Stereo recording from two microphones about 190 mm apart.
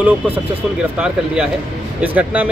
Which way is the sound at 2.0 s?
10° right (ahead or behind).